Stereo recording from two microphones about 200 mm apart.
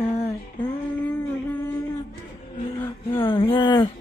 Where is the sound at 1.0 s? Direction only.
10° left (ahead or behind).